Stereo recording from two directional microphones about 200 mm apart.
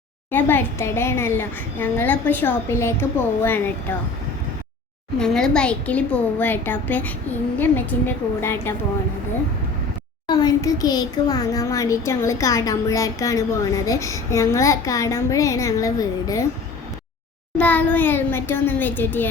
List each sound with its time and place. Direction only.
0.3 s a child's voice: 10° left (ahead or behind)
5.2 s a child's voice: 5° left (ahead or behind)
10.2 s a child's voice: 20° left (ahead or behind)
17.6 s a child's voice: 10° left (ahead or behind)